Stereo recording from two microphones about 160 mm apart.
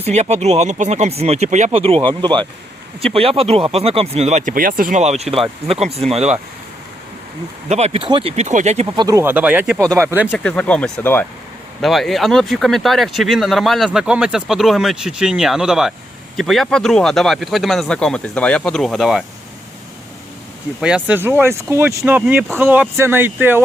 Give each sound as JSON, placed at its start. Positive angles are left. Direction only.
{"t": 0.1, "sound": "speech", "side_deg": -45}
{"t": 1.7, "sound": "speech", "side_deg": -35}
{"t": 4.5, "sound": "speech", "side_deg": -60}
{"t": 5.0, "sound": "speech", "side_deg": -45}
{"t": 7.7, "sound": "speech", "side_deg": -40}
{"t": 9.0, "sound": "speech", "side_deg": -20}
{"t": 9.3, "sound": "speech", "side_deg": -10}
{"t": 10.2, "sound": "speech", "side_deg": 5}
{"t": 20.8, "sound": "speech", "side_deg": -10}